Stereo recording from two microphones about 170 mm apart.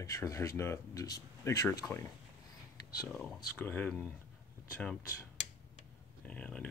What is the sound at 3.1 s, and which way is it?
Speech, 5° left (ahead or behind).